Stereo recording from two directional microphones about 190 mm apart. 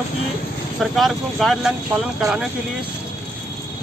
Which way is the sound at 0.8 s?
Centre (ahead or behind).